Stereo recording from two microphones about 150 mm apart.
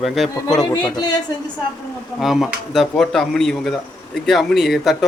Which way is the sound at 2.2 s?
Centre (ahead or behind).